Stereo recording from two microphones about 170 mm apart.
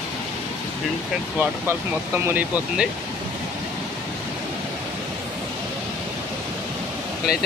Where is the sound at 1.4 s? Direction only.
10° right (ahead or behind).